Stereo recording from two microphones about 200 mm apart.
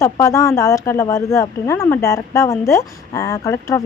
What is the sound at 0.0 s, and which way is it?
Speech, 15° left (ahead or behind).